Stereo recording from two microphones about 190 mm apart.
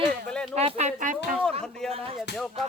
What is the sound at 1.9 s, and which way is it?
Speech, 30° right (ahead or behind).